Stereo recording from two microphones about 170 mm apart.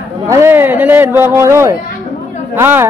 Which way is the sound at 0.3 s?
15° right (ahead or behind).